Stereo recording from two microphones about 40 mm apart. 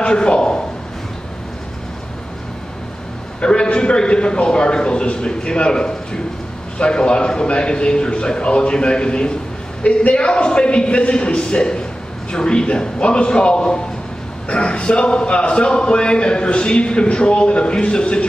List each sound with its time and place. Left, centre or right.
0.0 s a man's voice: left
3.3 s a man's voice: left